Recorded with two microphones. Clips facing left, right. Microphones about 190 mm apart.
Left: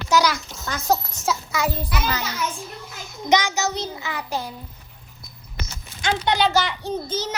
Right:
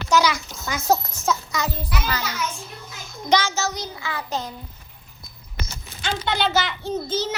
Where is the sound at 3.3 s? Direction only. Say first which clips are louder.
Left 1 dB; 15° left (ahead or behind).